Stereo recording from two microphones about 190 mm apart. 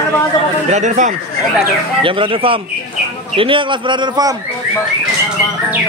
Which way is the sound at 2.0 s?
25° right (ahead or behind).